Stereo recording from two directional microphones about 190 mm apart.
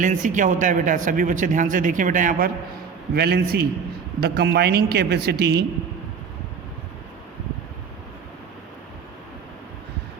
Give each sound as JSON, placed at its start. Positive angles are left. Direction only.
{"t": 0.0, "sound": "speech", "side_deg": -40}
{"t": 3.2, "sound": "a woman's voice", "side_deg": -55}